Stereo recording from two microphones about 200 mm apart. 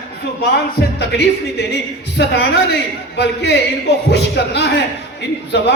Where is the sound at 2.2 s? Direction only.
60° left (ahead or behind).